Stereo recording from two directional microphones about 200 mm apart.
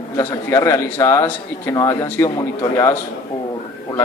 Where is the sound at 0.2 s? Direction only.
15° left (ahead or behind).